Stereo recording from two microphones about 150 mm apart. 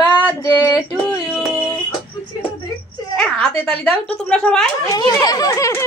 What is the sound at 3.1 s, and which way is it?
Speech, 5° left (ahead or behind).